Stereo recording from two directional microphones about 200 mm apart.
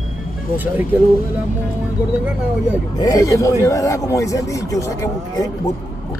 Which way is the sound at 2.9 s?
15° left (ahead or behind).